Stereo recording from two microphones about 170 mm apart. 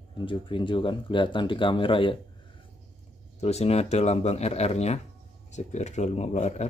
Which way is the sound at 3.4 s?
40° left (ahead or behind).